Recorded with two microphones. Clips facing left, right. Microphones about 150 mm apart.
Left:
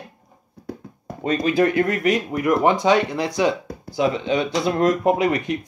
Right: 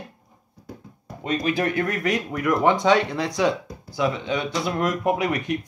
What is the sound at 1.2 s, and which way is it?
Speech, 40° left (ahead or behind).